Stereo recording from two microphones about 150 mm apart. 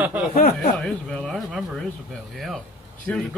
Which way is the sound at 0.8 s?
5° left (ahead or behind).